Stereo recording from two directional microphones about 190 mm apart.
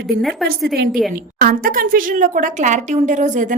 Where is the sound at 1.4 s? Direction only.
50° right (ahead or behind).